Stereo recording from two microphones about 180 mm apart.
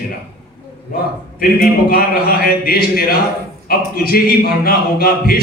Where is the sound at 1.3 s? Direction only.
55° left (ahead or behind).